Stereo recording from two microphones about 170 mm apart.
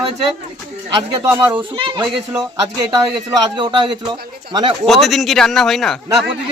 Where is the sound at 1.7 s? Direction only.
30° right (ahead or behind).